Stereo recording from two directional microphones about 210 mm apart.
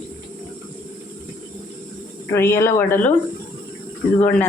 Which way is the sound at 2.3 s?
10° left (ahead or behind).